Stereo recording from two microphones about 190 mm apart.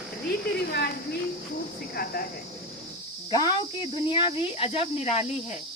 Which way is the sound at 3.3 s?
20° left (ahead or behind).